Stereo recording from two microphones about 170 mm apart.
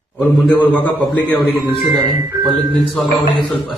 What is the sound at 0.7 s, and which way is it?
Speech, 5° left (ahead or behind).